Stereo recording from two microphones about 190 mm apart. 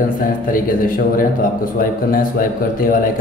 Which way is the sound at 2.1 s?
50° left (ahead or behind).